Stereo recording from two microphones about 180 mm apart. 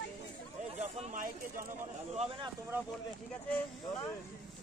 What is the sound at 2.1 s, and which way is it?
Speech, 35° right (ahead or behind).